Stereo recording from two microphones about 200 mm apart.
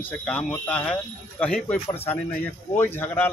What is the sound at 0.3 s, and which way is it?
A man's voice, 5° left (ahead or behind).